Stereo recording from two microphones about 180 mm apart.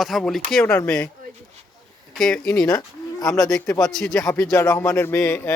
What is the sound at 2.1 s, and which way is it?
Speech, centre (ahead or behind).